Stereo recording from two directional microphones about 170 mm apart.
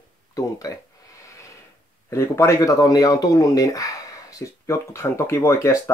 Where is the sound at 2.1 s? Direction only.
15° left (ahead or behind).